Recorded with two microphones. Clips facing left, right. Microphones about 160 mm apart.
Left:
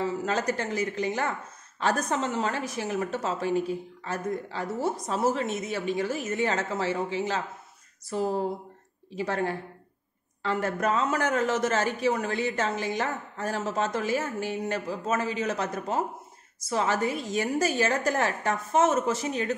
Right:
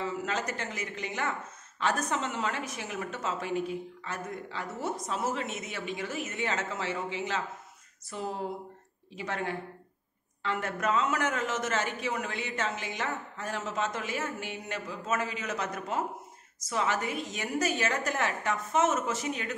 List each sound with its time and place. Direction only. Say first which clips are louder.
0.0 s a woman's voice: left 5 dB; 35° left (ahead or behind)